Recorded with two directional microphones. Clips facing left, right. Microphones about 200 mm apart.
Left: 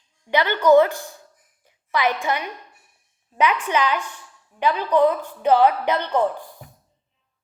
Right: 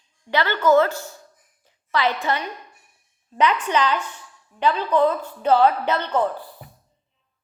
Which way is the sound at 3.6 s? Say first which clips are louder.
Even; 10° left (ahead or behind).